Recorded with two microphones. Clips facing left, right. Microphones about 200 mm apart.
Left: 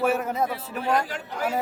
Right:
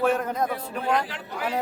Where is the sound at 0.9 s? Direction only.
45° left (ahead or behind).